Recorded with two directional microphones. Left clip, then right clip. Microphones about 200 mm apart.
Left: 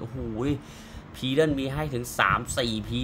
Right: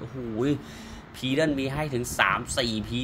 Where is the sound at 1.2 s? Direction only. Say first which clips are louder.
Left 1 dB; 10° left (ahead or behind).